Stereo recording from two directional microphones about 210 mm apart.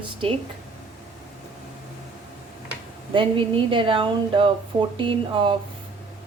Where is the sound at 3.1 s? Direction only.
25° right (ahead or behind).